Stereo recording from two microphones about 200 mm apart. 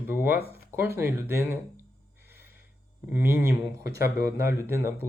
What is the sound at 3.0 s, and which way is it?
Speech, 10° right (ahead or behind).